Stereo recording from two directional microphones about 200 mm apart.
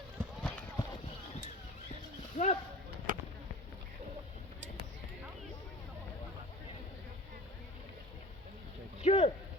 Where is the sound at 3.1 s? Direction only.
45° right (ahead or behind).